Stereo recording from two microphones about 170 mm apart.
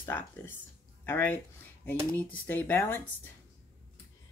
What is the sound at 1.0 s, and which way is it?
Speech, 10° left (ahead or behind).